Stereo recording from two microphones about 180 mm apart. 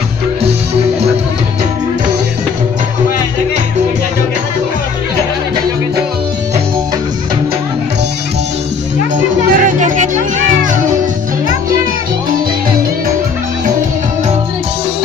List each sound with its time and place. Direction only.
9.1 s music: 45° right (ahead or behind)